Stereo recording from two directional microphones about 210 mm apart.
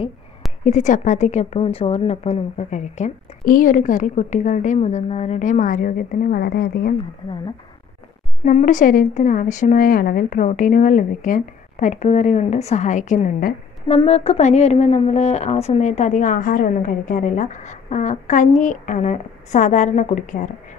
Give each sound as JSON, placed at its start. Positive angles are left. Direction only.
{"t": 0.7, "sound": "a woman's voice", "side_deg": 35}
{"t": 8.5, "sound": "a woman's voice", "side_deg": 35}
{"t": 13.8, "sound": "a woman's voice", "side_deg": 30}